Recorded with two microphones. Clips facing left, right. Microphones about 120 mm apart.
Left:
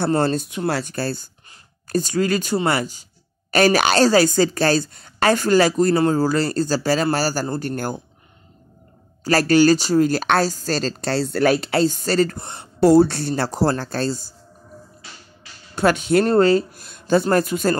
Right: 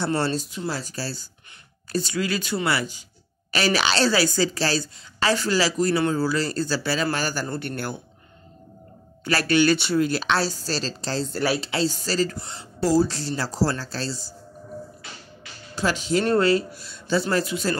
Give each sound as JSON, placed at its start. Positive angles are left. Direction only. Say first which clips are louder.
{"t": 0.0, "sound": "speech", "louder": "left 5 dB", "side_deg": 50}
{"t": 9.2, "sound": "speech", "louder": "left 5 dB", "side_deg": 40}
{"t": 11.5, "sound": "speech", "louder": "left 6 dB", "side_deg": 50}
{"t": 15.7, "sound": "speech", "louder": "left 6 dB", "side_deg": 55}
{"t": 16.3, "sound": "speech", "louder": "left 2 dB", "side_deg": 35}